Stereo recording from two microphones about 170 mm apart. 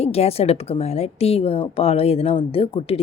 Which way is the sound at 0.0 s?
35° left (ahead or behind).